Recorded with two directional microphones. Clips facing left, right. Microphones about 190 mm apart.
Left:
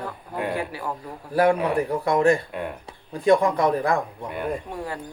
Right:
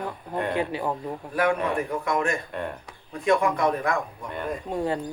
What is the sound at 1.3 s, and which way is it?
Speech, 35° left (ahead or behind).